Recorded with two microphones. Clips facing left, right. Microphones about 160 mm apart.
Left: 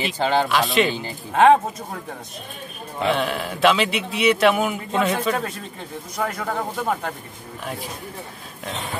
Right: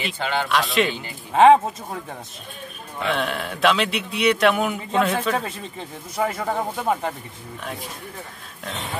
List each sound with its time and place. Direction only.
0.2 s speech: 35° left (ahead or behind)
0.5 s speech: centre (ahead or behind)
3.1 s speech: centre (ahead or behind)